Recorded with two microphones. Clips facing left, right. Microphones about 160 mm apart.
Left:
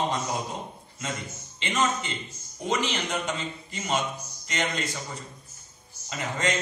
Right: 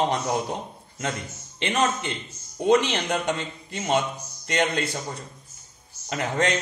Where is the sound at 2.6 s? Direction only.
65° right (ahead or behind).